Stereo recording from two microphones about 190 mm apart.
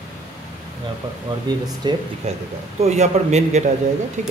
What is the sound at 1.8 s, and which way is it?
Speech, 20° right (ahead or behind).